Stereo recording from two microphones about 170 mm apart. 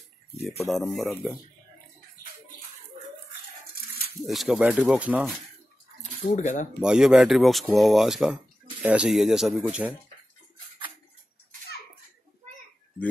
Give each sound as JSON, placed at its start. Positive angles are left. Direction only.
{"t": 0.7, "sound": "speech", "side_deg": 0}
{"t": 4.3, "sound": "speech", "side_deg": 0}
{"t": 6.3, "sound": "speech", "side_deg": 45}
{"t": 6.8, "sound": "speech", "side_deg": -5}